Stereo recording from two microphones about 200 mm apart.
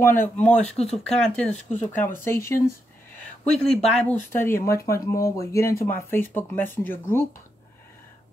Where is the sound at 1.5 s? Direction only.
35° left (ahead or behind).